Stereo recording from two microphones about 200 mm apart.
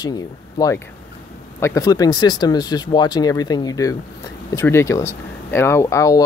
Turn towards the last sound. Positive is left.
turn(degrees=15)  # may be behind; listen again after turning